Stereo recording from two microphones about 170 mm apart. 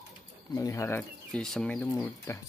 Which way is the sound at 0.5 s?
15° left (ahead or behind).